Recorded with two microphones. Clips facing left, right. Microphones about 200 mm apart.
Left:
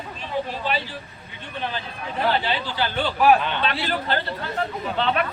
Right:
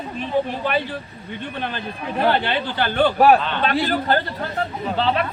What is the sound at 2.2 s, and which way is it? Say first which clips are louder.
A man's voice: right 3 dB; 60° right (ahead or behind).